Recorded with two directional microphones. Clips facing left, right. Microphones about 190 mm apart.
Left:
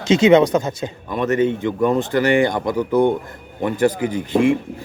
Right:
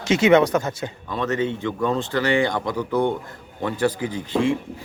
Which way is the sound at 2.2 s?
50° left (ahead or behind).